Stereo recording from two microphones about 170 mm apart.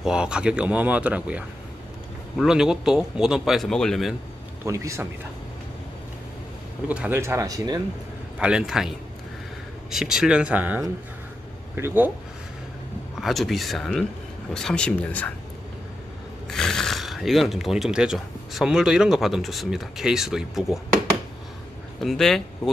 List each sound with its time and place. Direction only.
0.0 s speech: 5° right (ahead or behind)
4.6 s speech: 15° right (ahead or behind)
6.9 s speech: 10° right (ahead or behind)
8.4 s speech: 5° right (ahead or behind)
13.2 s speech: centre (ahead or behind)
16.4 s speech: 5° left (ahead or behind)
22.0 s speech: centre (ahead or behind)